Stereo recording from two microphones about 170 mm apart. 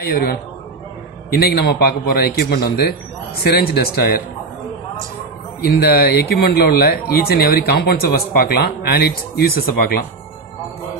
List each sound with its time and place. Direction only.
0.0 s speech: 65° left (ahead or behind)
5.7 s speech: 60° left (ahead or behind)